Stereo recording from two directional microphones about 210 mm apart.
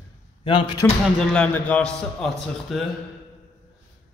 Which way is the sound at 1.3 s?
5° left (ahead or behind).